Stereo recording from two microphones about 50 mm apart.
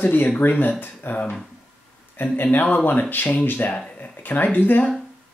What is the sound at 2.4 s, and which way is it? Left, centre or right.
Speech, left.